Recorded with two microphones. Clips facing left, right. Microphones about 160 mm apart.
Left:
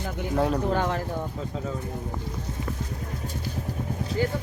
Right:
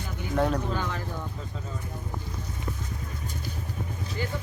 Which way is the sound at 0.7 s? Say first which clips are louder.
Left 6 dB; 60° left (ahead or behind).